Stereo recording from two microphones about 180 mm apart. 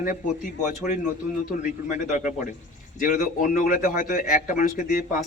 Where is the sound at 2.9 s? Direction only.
50° left (ahead or behind).